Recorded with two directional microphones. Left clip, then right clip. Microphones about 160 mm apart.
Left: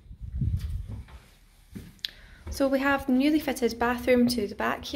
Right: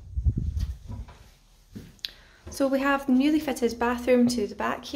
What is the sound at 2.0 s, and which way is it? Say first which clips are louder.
A woman's voice: left 1 dB; 20° right (ahead or behind).